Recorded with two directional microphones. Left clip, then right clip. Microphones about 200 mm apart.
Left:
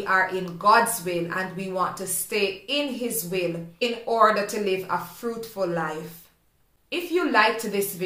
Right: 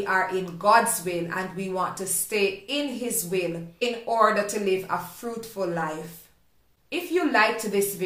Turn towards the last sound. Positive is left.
turn(degrees=5)  # may be behind; listen again after turning